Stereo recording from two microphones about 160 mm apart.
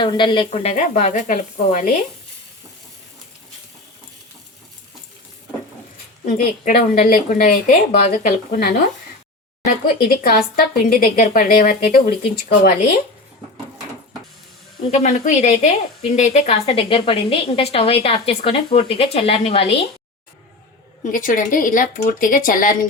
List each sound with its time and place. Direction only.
0.0 s speech: 30° left (ahead or behind)
0.5 s speech: 45° left (ahead or behind)
6.2 s a woman's voice: 60° left (ahead or behind)
14.8 s a woman's voice: 45° left (ahead or behind)
21.0 s a woman's voice: 60° left (ahead or behind)